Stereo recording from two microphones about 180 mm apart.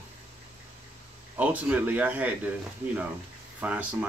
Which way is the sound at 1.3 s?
10° right (ahead or behind).